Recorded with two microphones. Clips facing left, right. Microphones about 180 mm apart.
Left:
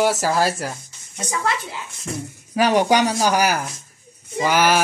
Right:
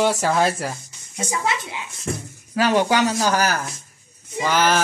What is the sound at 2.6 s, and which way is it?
Speech, 15° left (ahead or behind).